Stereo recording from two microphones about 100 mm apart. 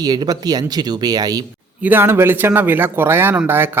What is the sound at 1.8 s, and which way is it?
Speech, 20° right (ahead or behind).